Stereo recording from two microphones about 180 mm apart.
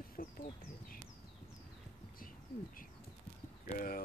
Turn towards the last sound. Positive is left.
turn(degrees=50)  # may be behind; listen again after turning